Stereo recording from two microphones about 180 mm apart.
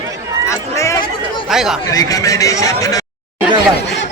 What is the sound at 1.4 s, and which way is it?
Speech, centre (ahead or behind).